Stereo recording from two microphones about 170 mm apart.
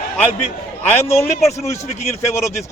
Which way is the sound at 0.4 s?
40° left (ahead or behind).